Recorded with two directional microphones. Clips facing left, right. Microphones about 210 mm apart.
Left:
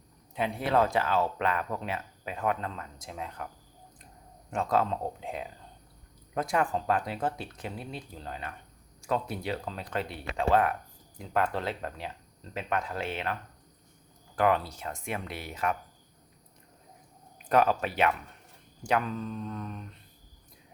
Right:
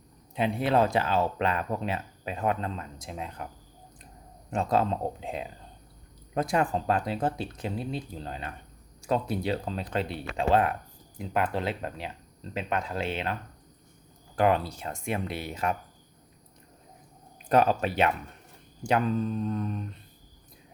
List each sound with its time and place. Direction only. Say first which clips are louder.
0.3 s speech: right 2 dB; 25° right (ahead or behind)
4.5 s speech: right 2 dB; 30° right (ahead or behind)
17.3 s speech: right 2 dB; 30° right (ahead or behind)